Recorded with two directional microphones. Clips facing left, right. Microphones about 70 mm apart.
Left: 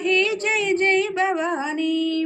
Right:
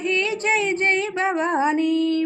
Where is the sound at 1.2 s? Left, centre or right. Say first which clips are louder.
Right 1 dB; right.